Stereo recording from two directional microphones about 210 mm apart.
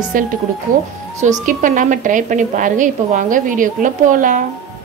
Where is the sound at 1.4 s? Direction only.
40° right (ahead or behind).